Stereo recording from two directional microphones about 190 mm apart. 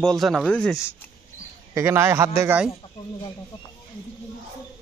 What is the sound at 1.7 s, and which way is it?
Speech, 15° right (ahead or behind).